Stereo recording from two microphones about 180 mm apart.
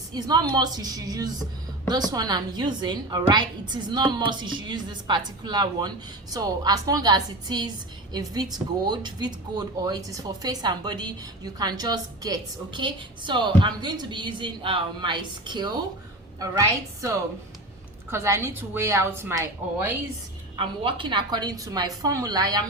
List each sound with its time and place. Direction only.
0.1 s a woman's voice: 20° right (ahead or behind)
20.6 s speech: 30° right (ahead or behind)